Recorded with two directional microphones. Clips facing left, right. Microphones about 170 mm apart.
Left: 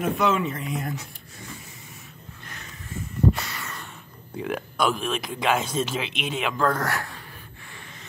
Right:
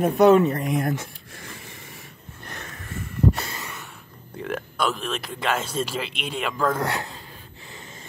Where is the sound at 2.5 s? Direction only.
55° right (ahead or behind).